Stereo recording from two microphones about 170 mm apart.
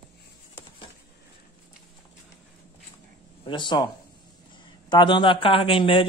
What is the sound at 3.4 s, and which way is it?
Speech, 25° left (ahead or behind).